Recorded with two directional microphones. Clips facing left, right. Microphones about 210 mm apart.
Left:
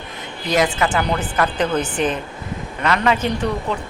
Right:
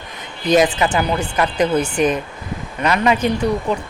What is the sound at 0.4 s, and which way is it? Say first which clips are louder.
Speech: right 4 dB; 20° right (ahead or behind).